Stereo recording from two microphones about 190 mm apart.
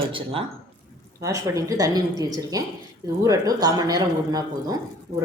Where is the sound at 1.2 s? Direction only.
15° right (ahead or behind).